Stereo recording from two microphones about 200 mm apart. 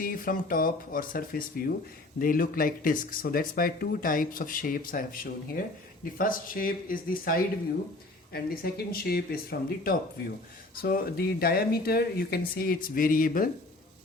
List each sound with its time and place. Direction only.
0.0 s speech: 45° left (ahead or behind)